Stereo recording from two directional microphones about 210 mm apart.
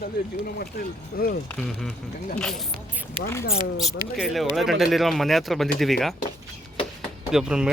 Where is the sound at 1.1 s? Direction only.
45° left (ahead or behind).